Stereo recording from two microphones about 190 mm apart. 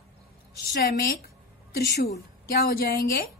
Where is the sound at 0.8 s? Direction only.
55° left (ahead or behind).